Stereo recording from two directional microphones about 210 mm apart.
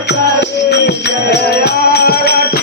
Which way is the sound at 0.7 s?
50° left (ahead or behind).